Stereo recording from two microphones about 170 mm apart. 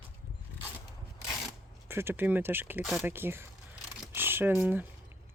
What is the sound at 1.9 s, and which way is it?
Speech, 15° right (ahead or behind).